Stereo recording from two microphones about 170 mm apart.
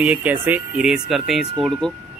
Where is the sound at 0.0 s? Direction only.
10° right (ahead or behind).